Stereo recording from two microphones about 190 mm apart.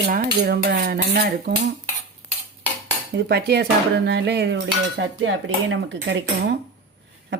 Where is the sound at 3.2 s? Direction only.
60° right (ahead or behind); by 5.3 s 85° right.